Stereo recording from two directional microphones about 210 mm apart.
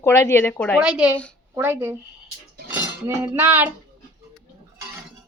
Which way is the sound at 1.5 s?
10° right (ahead or behind).